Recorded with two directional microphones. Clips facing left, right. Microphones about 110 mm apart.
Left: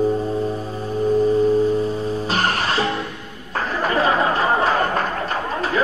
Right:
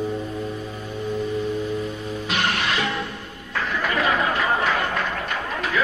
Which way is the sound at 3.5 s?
35° left (ahead or behind).